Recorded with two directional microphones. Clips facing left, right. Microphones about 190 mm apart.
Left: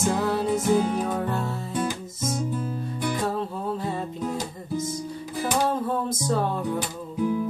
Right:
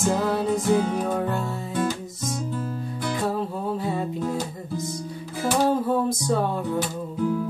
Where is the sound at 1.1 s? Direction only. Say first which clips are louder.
Right 1 dB; centre (ahead or behind).